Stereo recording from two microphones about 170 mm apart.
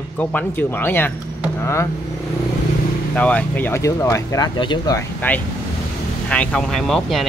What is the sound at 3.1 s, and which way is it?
Speech, 10° left (ahead or behind).